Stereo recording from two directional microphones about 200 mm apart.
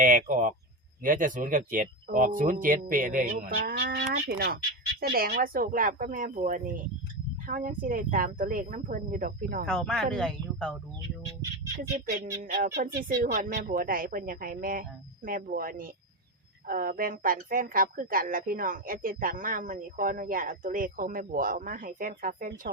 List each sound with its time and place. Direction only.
0.0 s speech: 40° right (ahead or behind)
9.6 s speech: centre (ahead or behind)
12.0 s speech: 45° right (ahead or behind)
13.3 s speech: 40° right (ahead or behind)